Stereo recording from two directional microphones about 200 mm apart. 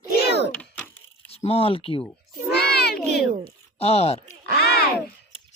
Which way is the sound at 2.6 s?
55° left (ahead or behind).